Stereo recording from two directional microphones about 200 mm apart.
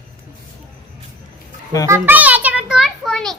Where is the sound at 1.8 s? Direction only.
10° right (ahead or behind).